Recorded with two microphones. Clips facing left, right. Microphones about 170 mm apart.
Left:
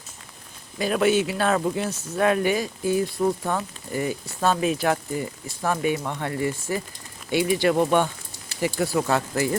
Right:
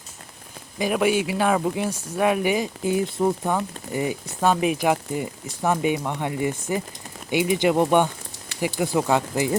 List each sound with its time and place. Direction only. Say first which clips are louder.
0.8 s speech: even; 15° right (ahead or behind)